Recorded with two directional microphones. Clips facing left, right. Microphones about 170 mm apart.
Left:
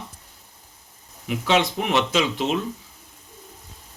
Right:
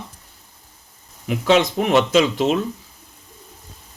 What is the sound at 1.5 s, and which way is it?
Speech, 45° right (ahead or behind).